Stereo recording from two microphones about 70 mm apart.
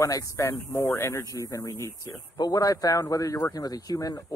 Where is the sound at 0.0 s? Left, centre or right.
Left.